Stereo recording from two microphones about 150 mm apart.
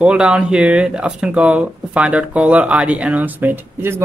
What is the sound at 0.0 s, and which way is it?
Speech, 5° right (ahead or behind).